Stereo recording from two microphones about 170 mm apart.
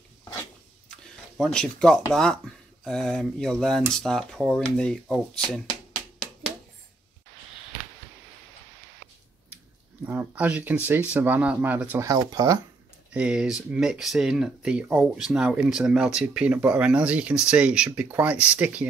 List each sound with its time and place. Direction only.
1.4 s speech: 5° left (ahead or behind)
10.0 s speech: 10° right (ahead or behind)
12.1 s speech: 20° right (ahead or behind)
13.1 s speech: 5° right (ahead or behind)